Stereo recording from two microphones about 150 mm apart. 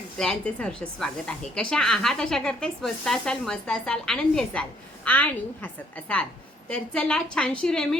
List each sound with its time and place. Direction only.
0.2 s a woman's voice: 5° left (ahead or behind)